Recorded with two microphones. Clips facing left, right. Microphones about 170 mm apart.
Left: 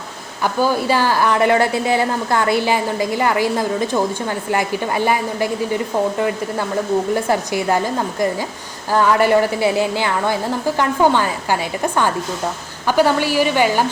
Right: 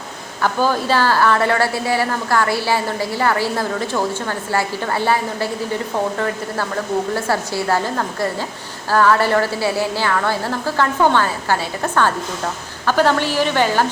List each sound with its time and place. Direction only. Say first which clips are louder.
0.4 s a woman's voice: left 1 dB; 15° left (ahead or behind)